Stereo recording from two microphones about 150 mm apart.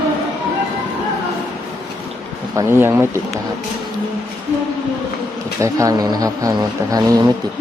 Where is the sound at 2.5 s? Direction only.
15° right (ahead or behind).